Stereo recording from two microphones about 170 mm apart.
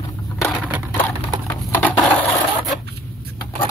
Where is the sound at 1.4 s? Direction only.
10° left (ahead or behind).